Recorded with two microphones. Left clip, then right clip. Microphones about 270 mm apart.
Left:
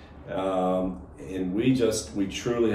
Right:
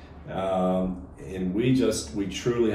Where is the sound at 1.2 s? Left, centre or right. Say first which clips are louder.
Left 1 dB; centre.